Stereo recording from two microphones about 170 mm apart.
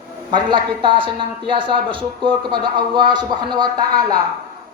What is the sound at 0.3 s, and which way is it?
A woman's voice, 25° right (ahead or behind).